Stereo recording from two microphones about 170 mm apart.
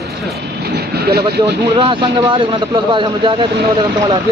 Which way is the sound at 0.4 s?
65° right (ahead or behind).